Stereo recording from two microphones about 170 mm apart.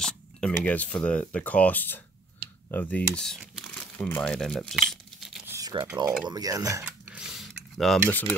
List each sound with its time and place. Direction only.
0.0 s speech: 5° left (ahead or behind)
5.5 s a sound: 20° right (ahead or behind)
6.2 s speech: 20° right (ahead or behind)
6.8 s mechanisms: 5° right (ahead or behind)
8.1 s speech: 10° left (ahead or behind)